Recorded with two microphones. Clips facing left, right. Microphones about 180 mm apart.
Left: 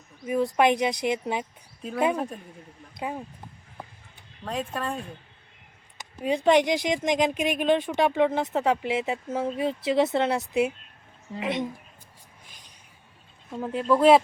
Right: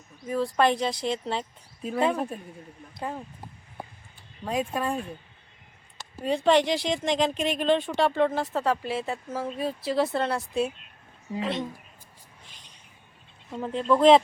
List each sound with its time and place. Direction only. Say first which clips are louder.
0.3 s speech: left 2 dB; 15° left (ahead or behind)
2.1 s speech: even; 5° right (ahead or behind)
3.0 s speech: left 1 dB; 10° left (ahead or behind)
4.4 s speech: right 3 dB; 10° right (ahead or behind)
6.2 s speech: left 1 dB; 15° left (ahead or behind)
12.5 s vehicle: even; 10° left (ahead or behind)
13.5 s speech: even; 5° left (ahead or behind)